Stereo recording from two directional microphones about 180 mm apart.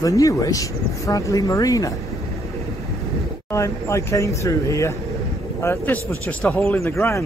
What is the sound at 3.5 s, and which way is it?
Speech, 15° left (ahead or behind).